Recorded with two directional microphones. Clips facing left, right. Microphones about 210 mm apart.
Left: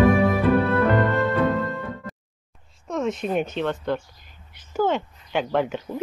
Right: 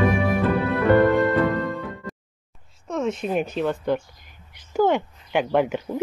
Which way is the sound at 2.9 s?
Centre (ahead or behind).